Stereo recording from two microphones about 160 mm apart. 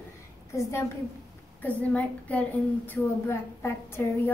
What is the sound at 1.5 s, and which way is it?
Speech, 10° left (ahead or behind).